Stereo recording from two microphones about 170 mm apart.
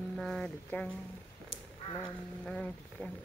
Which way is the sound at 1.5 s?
90° left.